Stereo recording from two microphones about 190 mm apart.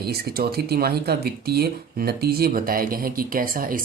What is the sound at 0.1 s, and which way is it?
Speech, 55° right (ahead or behind).